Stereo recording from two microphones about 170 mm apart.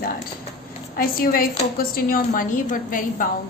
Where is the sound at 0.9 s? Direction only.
60° left (ahead or behind).